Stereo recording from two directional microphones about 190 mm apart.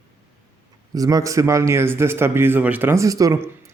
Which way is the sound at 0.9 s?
20° right (ahead or behind).